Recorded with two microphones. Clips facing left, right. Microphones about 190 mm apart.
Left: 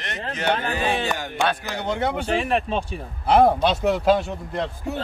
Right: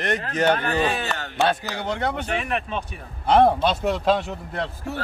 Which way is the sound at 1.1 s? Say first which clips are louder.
Right 1 dB; 15° left (ahead or behind).